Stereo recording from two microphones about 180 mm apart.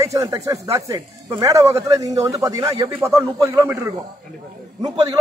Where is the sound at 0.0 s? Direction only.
15° right (ahead or behind).